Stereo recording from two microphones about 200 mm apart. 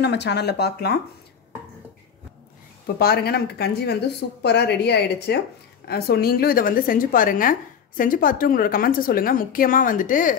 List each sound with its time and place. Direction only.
0.0 s speech: 55° left (ahead or behind)
3.0 s a woman's voice: 50° left (ahead or behind)